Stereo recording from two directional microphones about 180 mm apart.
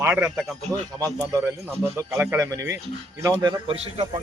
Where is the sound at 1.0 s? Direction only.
20° right (ahead or behind).